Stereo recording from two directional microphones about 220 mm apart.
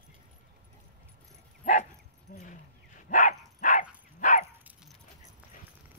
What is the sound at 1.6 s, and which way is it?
Dog, 35° left (ahead or behind).